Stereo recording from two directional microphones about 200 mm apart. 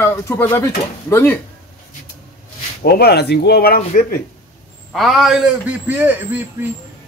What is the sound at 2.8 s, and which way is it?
Speech, 50° left (ahead or behind).